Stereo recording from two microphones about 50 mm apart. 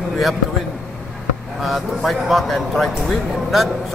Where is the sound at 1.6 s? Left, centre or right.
Centre.